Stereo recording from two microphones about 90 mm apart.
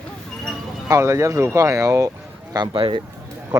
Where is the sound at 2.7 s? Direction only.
70° right (ahead or behind).